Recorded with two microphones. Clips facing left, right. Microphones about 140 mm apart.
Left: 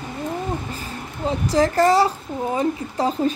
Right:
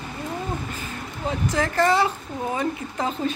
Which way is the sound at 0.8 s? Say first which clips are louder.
Left 3 dB; 35° left (ahead or behind).